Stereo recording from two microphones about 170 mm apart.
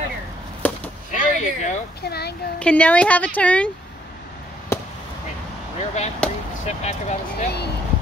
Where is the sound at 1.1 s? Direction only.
45° left (ahead or behind).